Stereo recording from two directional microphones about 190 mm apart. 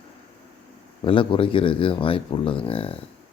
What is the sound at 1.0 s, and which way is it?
Speech, 25° left (ahead or behind).